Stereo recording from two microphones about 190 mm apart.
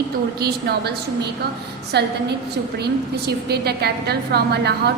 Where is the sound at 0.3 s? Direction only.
55° right (ahead or behind).